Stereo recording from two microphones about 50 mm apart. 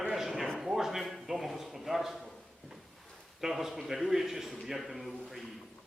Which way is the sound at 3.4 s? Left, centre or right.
Centre.